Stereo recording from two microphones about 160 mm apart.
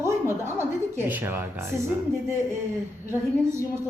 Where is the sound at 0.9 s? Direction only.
10° right (ahead or behind).